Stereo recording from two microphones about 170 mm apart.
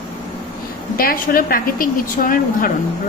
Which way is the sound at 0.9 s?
55° left (ahead or behind).